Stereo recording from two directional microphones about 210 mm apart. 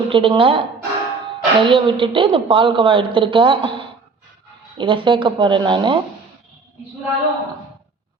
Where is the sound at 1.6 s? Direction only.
25° right (ahead or behind).